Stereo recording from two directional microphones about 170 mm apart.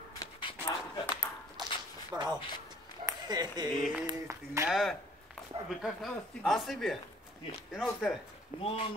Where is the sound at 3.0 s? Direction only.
25° right (ahead or behind).